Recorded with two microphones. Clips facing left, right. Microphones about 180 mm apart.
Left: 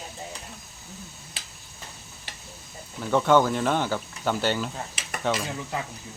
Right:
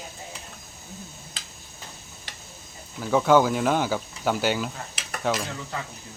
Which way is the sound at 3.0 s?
5° right (ahead or behind).